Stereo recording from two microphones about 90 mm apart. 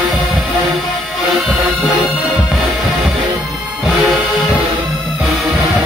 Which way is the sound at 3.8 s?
Centre (ahead or behind).